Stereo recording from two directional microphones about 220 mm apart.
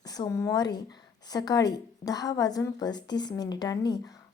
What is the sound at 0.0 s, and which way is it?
A woman's voice, 15° left (ahead or behind).